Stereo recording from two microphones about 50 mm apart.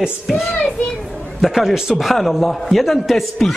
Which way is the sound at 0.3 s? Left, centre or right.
Centre.